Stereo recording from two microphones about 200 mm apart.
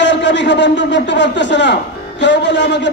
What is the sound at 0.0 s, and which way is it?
A man's voice, 60° left (ahead or behind).